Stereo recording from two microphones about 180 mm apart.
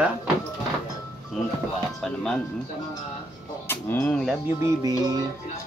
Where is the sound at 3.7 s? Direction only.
10° left (ahead or behind).